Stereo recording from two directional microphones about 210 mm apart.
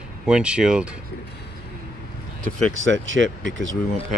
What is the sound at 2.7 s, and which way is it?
Speech, 65° right (ahead or behind).